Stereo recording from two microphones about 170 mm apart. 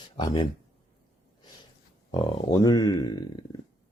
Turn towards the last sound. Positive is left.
turn(degrees=25)  # may be behind; listen again after turning